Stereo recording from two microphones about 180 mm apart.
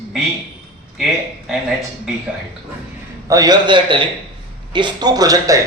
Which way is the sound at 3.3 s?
20° right (ahead or behind).